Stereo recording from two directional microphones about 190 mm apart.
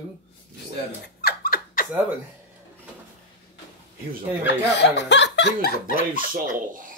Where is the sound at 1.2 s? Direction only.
55° left (ahead or behind).